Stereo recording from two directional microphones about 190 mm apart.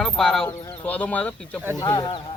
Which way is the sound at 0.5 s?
15° left (ahead or behind).